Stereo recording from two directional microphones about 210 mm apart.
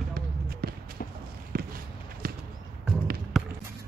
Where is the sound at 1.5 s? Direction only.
45° right (ahead or behind).